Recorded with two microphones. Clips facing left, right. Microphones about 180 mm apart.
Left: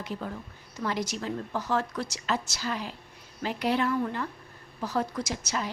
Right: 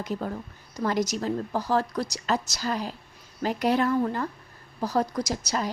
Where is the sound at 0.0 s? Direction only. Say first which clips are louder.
Right 4 dB; 40° right (ahead or behind).